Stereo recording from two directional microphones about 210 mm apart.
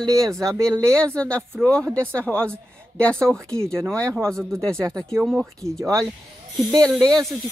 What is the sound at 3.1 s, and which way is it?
Speech, 10° right (ahead or behind).